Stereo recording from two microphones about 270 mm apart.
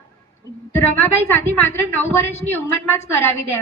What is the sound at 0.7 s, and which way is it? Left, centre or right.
A woman's voice, centre.